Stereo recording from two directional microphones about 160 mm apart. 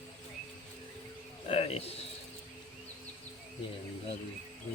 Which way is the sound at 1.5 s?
40° left (ahead or behind).